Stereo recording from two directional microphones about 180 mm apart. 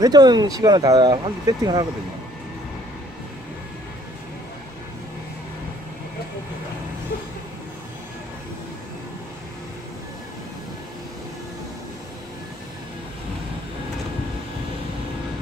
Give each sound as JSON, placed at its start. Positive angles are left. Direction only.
{"t": 0.0, "sound": "speech", "side_deg": -20}